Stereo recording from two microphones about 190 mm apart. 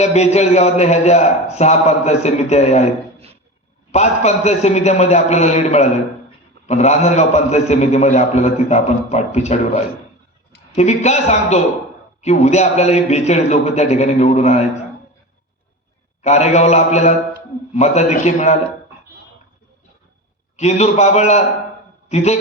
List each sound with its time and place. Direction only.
0.0 s a man's voice: 35° left (ahead or behind)
3.9 s a man's voice: 35° left (ahead or behind)
16.2 s a man's voice: 35° left (ahead or behind)
20.6 s a man's voice: 35° left (ahead or behind)